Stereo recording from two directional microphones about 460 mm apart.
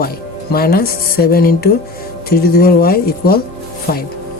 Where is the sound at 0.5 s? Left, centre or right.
Centre.